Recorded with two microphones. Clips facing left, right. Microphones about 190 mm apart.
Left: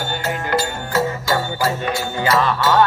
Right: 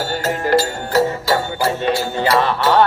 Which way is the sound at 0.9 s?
30° right (ahead or behind).